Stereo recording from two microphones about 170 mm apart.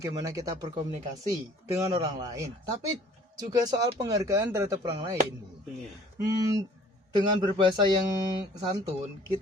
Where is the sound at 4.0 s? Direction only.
20° right (ahead or behind).